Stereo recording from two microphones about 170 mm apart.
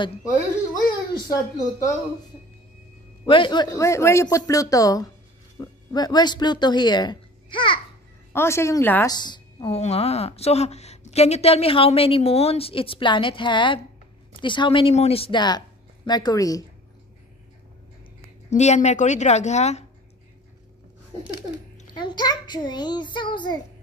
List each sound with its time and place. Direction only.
0.7 s a child's voice: 20° left (ahead or behind)
3.3 s a man's voice: 30° left (ahead or behind)
8.3 s a woman's voice: 15° left (ahead or behind)
9.1 s a woman's voice: 25° left (ahead or behind)
18.5 s a woman's voice: 45° left (ahead or behind)
21.9 s a man's voice: 25° left (ahead or behind)